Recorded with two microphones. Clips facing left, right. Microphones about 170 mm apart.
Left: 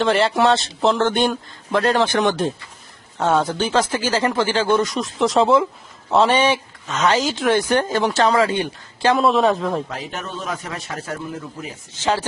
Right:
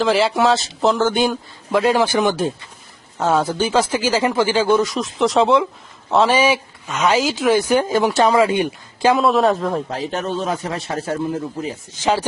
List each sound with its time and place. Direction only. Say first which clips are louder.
0.0 s a man's voice: right 1 dB; centre (ahead or behind)
9.1 s a man's voice: left 1 dB; centre (ahead or behind)
9.9 s speech: right 7 dB; 35° right (ahead or behind)